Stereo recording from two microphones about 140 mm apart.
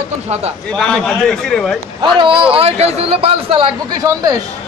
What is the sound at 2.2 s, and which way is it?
A man's voice, 35° right (ahead or behind).